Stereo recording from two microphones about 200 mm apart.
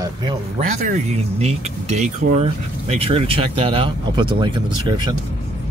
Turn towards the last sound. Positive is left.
turn(degrees=-20)  # may be behind; listen again after turning